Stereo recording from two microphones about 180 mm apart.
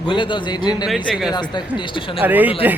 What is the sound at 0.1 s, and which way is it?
Speech, 25° left (ahead or behind).